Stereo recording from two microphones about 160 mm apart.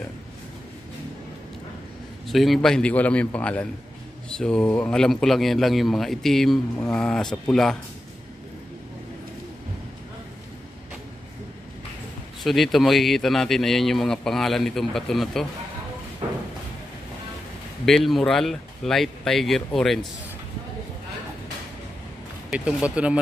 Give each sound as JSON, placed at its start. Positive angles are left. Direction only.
{"t": 2.2, "sound": "a man's voice", "side_deg": 0}
{"t": 12.4, "sound": "a man's voice", "side_deg": 0}
{"t": 16.2, "sound": "a sound", "side_deg": -35}
{"t": 17.8, "sound": "a man's voice", "side_deg": 0}
{"t": 22.5, "sound": "speech", "side_deg": -5}